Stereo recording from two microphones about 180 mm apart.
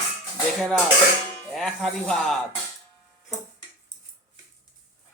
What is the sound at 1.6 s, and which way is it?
Speech, centre (ahead or behind).